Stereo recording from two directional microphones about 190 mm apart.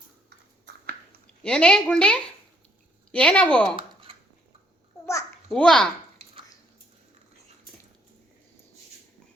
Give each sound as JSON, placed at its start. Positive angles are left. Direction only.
{"t": 1.4, "sound": "a woman's voice", "side_deg": 5}
{"t": 3.8, "sound": "a sound", "side_deg": -30}
{"t": 5.5, "sound": "a woman's voice", "side_deg": 5}